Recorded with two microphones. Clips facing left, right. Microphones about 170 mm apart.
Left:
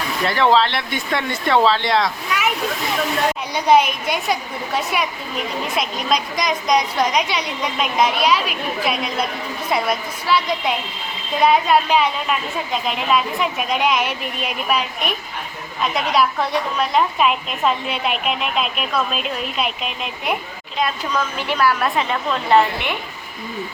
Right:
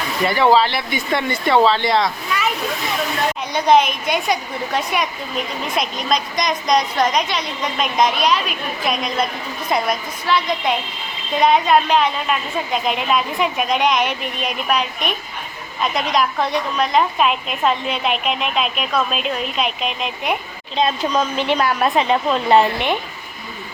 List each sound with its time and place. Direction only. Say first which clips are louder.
0.3 s a woman's voice: right 1 dB; 5° right (ahead or behind)
3.5 s a woman's voice: right 1 dB; 10° left (ahead or behind)
16.0 s a woman's voice: left 1 dB; 5° left (ahead or behind)
20.7 s a woman's voice: right 4 dB; 25° right (ahead or behind)